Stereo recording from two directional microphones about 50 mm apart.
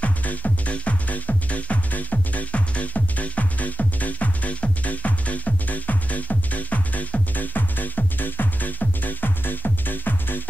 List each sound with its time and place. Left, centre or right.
0.0 s music: left